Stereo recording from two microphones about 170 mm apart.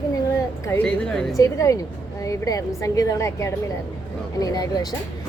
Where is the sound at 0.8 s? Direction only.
5° left (ahead or behind).